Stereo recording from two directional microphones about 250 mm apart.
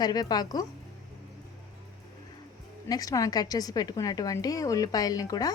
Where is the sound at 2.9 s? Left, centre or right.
Centre.